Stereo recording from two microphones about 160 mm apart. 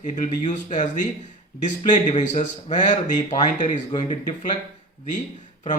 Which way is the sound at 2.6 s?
30° left (ahead or behind).